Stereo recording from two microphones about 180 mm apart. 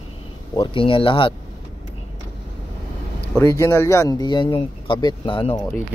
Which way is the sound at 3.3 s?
15° left (ahead or behind).